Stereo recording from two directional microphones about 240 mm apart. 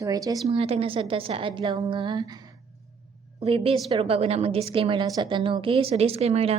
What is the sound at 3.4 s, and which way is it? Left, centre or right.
A woman's voice, right.